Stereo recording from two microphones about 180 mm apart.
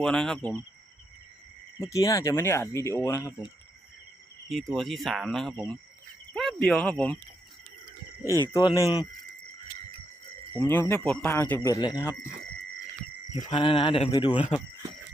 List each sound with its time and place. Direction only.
0.0 s speech: 5° left (ahead or behind)
1.8 s speech: 20° left (ahead or behind)
4.7 s speech: centre (ahead or behind)
8.5 s speech: 20° left (ahead or behind)
10.6 s speech: 10° left (ahead or behind)
13.5 s speech: 30° left (ahead or behind)